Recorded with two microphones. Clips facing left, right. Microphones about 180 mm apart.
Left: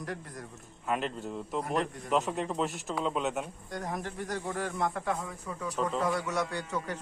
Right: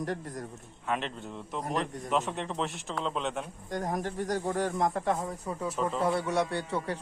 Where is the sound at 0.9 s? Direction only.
Centre (ahead or behind).